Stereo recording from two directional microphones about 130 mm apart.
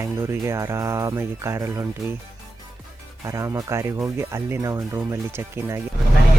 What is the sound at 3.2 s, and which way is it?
Speech, 20° right (ahead or behind).